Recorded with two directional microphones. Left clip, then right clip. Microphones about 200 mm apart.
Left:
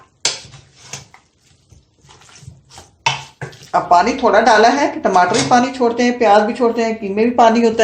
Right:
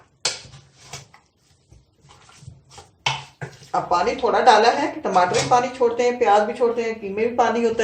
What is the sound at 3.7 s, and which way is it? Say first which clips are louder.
Speech: left 8 dB; 40° left (ahead or behind).